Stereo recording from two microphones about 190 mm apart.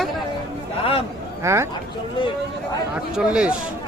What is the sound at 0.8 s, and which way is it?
Speech, 30° left (ahead or behind).